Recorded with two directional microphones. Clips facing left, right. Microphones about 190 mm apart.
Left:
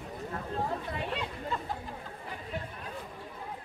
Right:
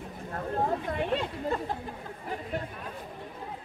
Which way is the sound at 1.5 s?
50° right (ahead or behind).